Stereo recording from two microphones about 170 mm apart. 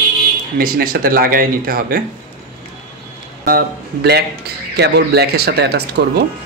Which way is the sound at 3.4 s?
65° right (ahead or behind).